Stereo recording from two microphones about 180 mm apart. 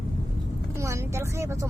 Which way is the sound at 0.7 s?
15° right (ahead or behind).